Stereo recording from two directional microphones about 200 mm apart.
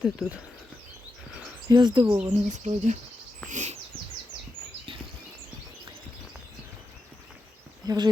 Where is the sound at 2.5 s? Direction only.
35° right (ahead or behind).